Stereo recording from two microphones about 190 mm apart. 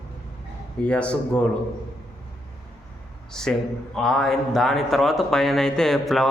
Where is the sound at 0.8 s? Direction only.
5° left (ahead or behind).